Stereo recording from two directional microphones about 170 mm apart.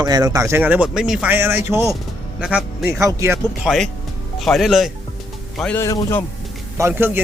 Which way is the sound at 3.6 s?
Centre (ahead or behind).